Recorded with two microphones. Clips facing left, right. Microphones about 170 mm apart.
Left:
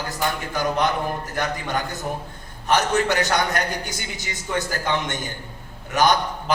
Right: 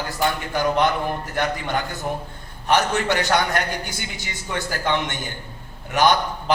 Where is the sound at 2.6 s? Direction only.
40° left (ahead or behind).